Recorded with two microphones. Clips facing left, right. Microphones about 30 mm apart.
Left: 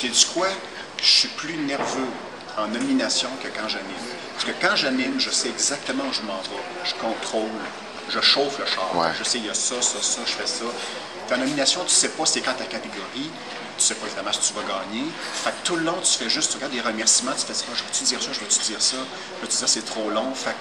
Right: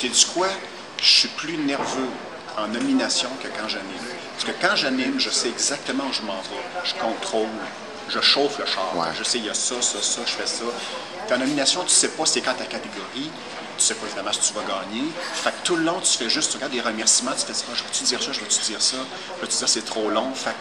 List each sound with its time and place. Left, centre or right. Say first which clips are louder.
0.0 s a man's voice: even; centre
8.8 s speech: left 5 dB; centre
9.2 s a man's voice: right 1 dB; centre
19.6 s speech: right 2 dB; centre